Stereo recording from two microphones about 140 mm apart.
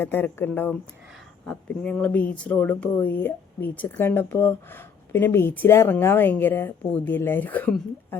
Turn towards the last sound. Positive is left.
turn(degrees=15)  # may be behind; listen again after turning